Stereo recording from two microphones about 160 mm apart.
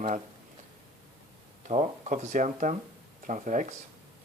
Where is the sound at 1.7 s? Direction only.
45° right (ahead or behind).